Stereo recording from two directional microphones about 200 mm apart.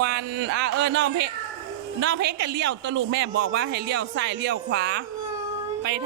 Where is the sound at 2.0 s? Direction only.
60° right (ahead or behind).